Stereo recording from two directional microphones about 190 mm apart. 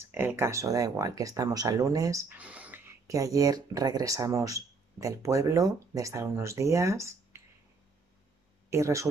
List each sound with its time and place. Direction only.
0.1 s speech: 10° right (ahead or behind)
8.6 s speech: 15° right (ahead or behind)